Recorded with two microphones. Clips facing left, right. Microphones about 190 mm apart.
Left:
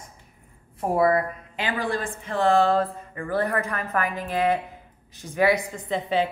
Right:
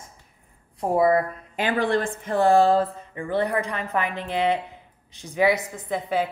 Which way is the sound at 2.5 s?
30° right (ahead or behind).